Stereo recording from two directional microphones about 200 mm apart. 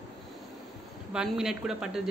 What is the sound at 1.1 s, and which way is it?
Speech, 5° right (ahead or behind).